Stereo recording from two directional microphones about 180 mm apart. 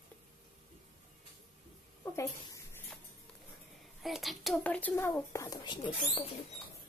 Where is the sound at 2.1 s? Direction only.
15° left (ahead or behind).